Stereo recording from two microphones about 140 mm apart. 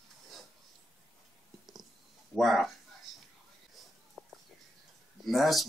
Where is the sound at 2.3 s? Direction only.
Centre (ahead or behind).